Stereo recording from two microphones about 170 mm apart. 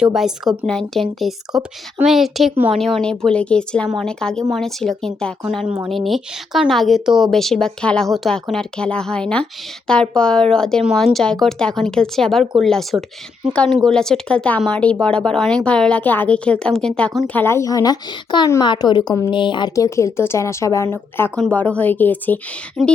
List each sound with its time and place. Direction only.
0.0 s speech: 5° right (ahead or behind)
22.8 s speech: 40° right (ahead or behind)